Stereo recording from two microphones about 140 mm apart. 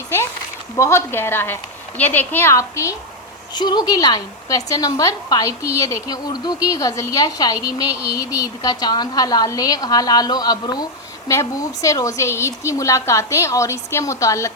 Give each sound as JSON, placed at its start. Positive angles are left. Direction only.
{"t": 0.8, "sound": "a woman's voice", "side_deg": 20}
{"t": 3.5, "sound": "speech", "side_deg": 30}